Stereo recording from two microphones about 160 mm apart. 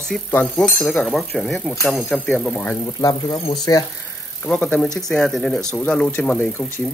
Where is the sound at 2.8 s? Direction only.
25° left (ahead or behind).